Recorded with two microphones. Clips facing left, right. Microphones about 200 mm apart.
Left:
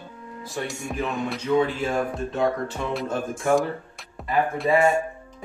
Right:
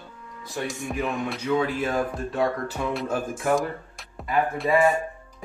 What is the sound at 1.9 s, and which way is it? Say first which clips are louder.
Music: left 1 dB; 25° left (ahead or behind).